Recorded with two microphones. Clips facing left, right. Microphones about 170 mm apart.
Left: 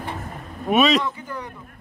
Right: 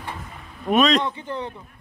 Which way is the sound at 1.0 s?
25° right (ahead or behind).